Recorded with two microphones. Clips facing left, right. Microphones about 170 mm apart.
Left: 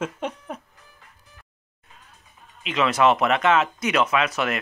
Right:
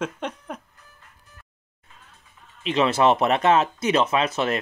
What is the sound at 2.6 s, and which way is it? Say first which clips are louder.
Speech: right 1 dB; 30° right (ahead or behind).